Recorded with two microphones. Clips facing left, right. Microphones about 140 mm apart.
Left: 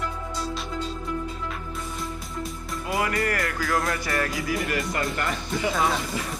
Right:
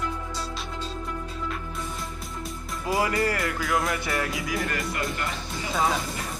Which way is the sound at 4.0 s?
20° right (ahead or behind).